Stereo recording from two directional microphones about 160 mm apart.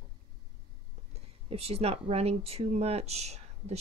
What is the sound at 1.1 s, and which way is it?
Speech, 40° right (ahead or behind).